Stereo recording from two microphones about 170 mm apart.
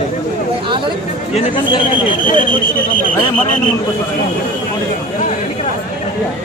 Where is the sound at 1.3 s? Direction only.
35° left (ahead or behind).